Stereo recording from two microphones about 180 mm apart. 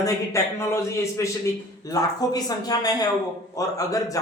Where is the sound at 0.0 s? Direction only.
15° left (ahead or behind).